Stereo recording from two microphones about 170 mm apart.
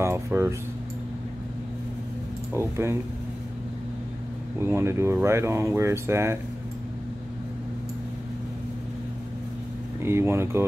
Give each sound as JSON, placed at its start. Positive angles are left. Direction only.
{"t": 0.0, "sound": "speech", "side_deg": -15}
{"t": 2.5, "sound": "speech", "side_deg": -15}
{"t": 4.6, "sound": "speech", "side_deg": -15}
{"t": 10.0, "sound": "speech", "side_deg": -15}